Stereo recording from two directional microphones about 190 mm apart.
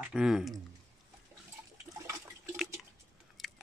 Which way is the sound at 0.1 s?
5° right (ahead or behind).